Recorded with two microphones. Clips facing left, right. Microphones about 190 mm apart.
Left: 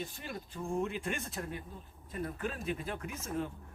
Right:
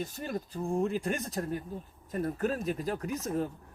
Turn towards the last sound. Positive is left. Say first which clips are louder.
# right 6 dB
turn(degrees=-40)  # may be behind; listen again after turning